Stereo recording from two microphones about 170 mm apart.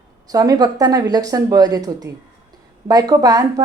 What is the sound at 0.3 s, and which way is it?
A woman's voice, 20° right (ahead or behind).